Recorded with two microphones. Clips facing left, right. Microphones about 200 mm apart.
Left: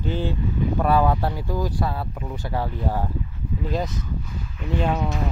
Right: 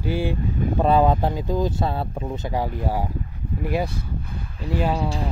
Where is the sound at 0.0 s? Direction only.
10° right (ahead or behind).